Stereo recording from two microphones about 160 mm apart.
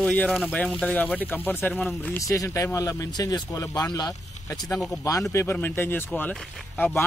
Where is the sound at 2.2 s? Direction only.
20° left (ahead or behind).